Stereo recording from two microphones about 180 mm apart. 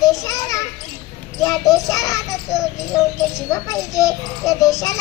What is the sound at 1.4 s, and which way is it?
Child singing, 20° left (ahead or behind).